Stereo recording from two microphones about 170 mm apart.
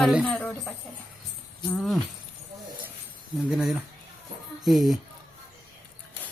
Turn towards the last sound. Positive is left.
turn(degrees=0)  # may be behind; listen again after turning